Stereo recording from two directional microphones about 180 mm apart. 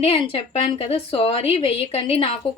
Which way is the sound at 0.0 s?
30° left (ahead or behind).